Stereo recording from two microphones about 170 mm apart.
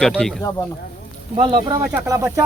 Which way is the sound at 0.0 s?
5° left (ahead or behind).